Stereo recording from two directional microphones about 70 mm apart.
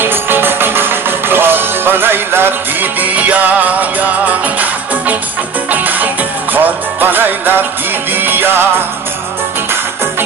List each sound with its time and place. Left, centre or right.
0.0 s music: right